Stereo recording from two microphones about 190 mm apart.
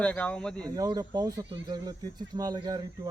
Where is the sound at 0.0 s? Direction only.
5° left (ahead or behind).